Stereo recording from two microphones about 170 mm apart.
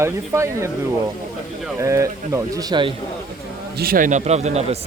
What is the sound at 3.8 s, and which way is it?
A man's voice, 55° right (ahead or behind).